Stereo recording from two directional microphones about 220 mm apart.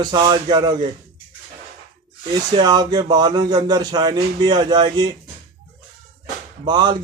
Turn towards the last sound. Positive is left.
turn(degrees=-20)  # may be behind; listen again after turning